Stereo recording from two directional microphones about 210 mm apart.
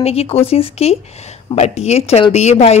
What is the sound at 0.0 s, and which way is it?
A woman's voice, 30° left (ahead or behind).